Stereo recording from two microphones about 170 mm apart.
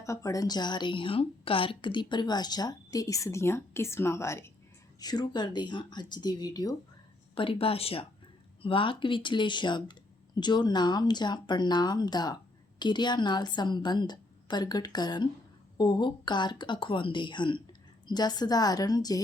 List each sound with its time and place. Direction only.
0.0 s a woman's voice: 20° left (ahead or behind)
7.3 s a woman's voice: 30° left (ahead or behind)